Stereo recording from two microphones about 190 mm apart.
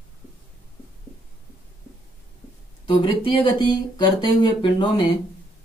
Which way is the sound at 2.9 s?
25° left (ahead or behind).